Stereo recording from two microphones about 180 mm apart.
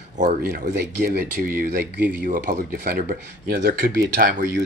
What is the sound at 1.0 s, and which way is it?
Speech, 55° right (ahead or behind).